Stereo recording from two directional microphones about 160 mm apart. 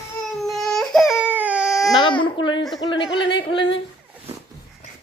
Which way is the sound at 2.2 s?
30° left (ahead or behind).